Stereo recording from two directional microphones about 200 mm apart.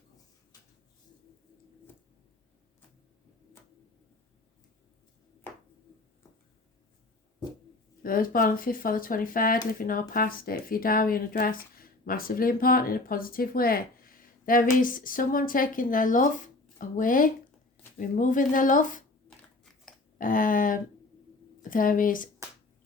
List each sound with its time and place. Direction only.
8.0 s a woman's voice: 45° left (ahead or behind)
20.1 s speech: 40° left (ahead or behind)